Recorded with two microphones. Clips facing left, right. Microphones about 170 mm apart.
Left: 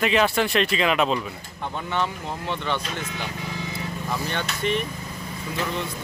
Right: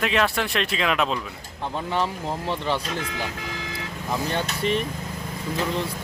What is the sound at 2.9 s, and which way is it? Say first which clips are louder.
Speech: right 2 dB; 90° right.